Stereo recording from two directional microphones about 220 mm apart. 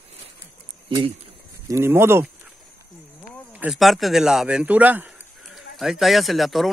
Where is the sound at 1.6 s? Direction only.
10° right (ahead or behind).